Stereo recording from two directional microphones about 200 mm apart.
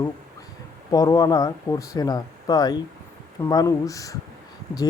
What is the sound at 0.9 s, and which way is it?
Speech, 20° left (ahead or behind).